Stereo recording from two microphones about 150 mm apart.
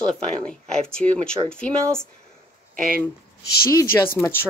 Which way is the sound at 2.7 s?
70° right (ahead or behind).